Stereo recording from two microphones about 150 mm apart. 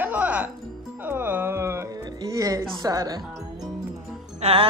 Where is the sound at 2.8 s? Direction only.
25° right (ahead or behind).